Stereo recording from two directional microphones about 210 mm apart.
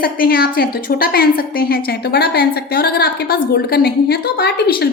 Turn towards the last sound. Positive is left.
turn(degrees=50)  # may be behind; listen again after turning